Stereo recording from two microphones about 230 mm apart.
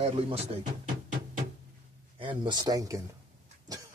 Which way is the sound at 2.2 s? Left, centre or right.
Right.